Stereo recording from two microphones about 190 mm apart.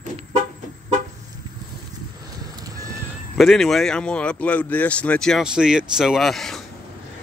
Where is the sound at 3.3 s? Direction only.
Centre (ahead or behind).